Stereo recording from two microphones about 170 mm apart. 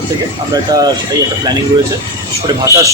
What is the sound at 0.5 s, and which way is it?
Speech, 20° right (ahead or behind).